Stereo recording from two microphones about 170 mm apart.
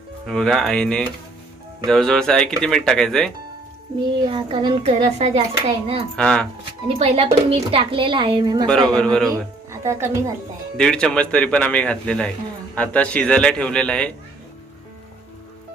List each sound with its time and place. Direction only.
0.3 s speech: centre (ahead or behind)
4.2 s a child's voice: 30° right (ahead or behind)
6.1 s speech: 5° left (ahead or behind)
6.8 s a child's voice: 35° right (ahead or behind)
8.6 s speech: centre (ahead or behind)
9.8 s speech: 15° right (ahead or behind)
10.8 s speech: 5° left (ahead or behind)